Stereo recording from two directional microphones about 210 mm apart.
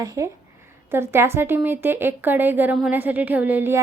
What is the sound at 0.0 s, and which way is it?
A woman's voice, 15° right (ahead or behind).